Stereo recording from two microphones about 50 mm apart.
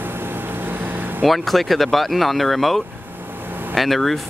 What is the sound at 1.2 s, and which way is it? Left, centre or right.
Speech, centre.